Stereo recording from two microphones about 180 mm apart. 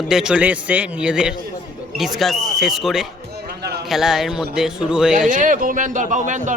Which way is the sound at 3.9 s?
Centre (ahead or behind).